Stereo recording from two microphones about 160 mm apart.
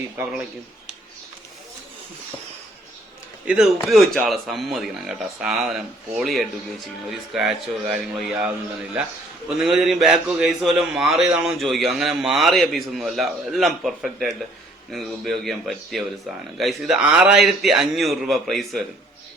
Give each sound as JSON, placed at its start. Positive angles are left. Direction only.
{"t": 3.4, "sound": "a man's voice", "side_deg": -5}
{"t": 9.6, "sound": "a man's voice", "side_deg": 0}